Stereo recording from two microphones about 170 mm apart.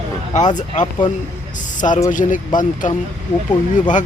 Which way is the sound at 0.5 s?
45° left (ahead or behind).